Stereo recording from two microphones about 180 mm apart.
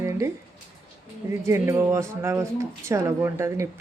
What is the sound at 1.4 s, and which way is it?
Speech, 15° right (ahead or behind).